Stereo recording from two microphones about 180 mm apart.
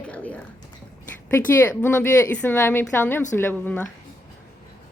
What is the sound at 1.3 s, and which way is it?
A woman's voice, 10° left (ahead or behind).